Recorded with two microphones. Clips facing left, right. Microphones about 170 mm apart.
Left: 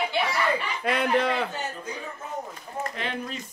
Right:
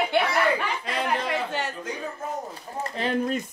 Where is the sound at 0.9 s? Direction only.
60° left (ahead or behind).